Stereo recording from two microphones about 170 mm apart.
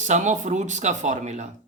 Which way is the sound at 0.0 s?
45° right (ahead or behind).